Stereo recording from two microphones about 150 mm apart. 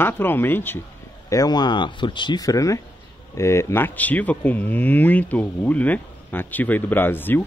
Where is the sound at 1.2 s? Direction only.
25° left (ahead or behind).